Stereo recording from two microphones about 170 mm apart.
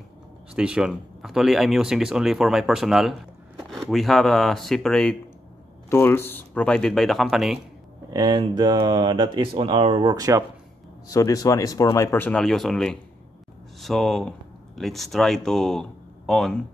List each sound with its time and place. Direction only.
0.6 s speech: 5° right (ahead or behind)
8.1 s speech: 25° right (ahead or behind)
11.1 s speech: 20° left (ahead or behind); by 16.6 s centre (ahead or behind)